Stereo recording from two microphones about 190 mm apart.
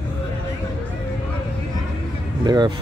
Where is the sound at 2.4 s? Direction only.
20° right (ahead or behind).